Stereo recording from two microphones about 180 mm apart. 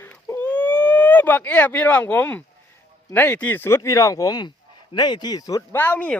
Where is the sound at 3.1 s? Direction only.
10° left (ahead or behind).